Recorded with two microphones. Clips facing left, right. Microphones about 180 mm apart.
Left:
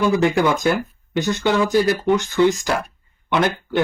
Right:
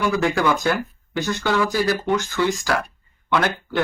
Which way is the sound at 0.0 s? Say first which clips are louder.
Left 3 dB; 20° left (ahead or behind).